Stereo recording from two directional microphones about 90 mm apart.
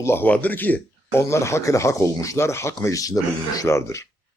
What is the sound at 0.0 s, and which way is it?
Speech, 25° left (ahead or behind).